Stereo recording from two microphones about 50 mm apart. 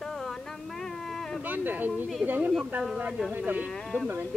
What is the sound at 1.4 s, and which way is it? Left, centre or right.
Speech, right.